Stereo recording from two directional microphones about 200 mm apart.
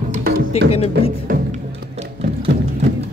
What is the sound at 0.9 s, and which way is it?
Music, 55° right (ahead or behind).